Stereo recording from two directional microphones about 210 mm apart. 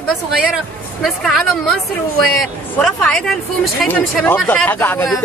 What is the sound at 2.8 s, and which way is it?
A man's voice, 5° left (ahead or behind).